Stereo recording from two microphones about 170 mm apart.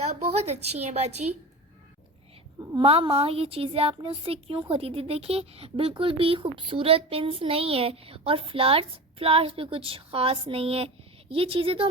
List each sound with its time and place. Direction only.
0.0 s a woman's voice: 40° right (ahead or behind)
2.6 s a woman's voice: 30° right (ahead or behind)